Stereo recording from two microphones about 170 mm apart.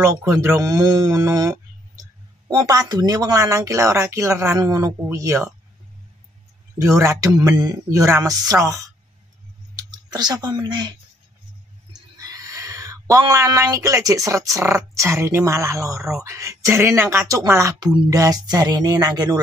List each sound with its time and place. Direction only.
0.0 s speech: 15° right (ahead or behind)
6.8 s speech: 20° right (ahead or behind)
12.3 s speech: 20° right (ahead or behind)